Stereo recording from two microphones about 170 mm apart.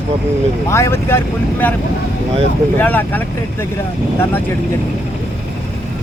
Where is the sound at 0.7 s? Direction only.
15° left (ahead or behind).